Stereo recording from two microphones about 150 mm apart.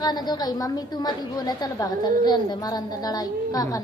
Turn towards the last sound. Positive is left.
turn(degrees=25)  # may be behind; listen again after turning